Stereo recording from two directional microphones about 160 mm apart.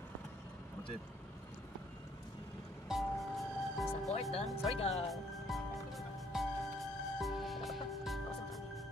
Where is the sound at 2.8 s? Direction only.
Centre (ahead or behind).